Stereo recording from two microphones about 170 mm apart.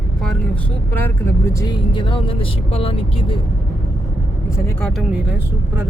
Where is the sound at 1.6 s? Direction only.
30° left (ahead or behind).